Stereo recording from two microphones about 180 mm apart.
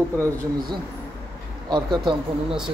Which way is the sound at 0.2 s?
25° right (ahead or behind).